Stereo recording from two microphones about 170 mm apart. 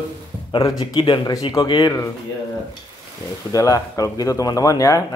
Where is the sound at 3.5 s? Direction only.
20° left (ahead or behind).